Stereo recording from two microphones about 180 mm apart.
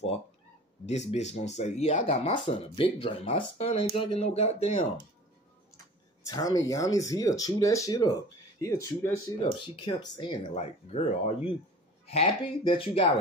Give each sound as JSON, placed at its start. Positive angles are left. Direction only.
{"t": 0.8, "sound": "speech", "side_deg": 35}
{"t": 6.2, "sound": "speech", "side_deg": 20}
{"t": 10.5, "sound": "speech", "side_deg": 35}
{"t": 12.1, "sound": "speech", "side_deg": 30}